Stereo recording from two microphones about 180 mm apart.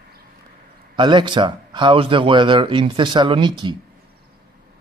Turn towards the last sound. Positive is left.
turn(degrees=-25)  # may be behind; listen again after turning